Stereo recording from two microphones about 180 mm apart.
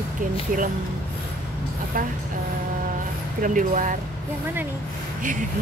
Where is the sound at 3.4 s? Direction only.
45° right (ahead or behind).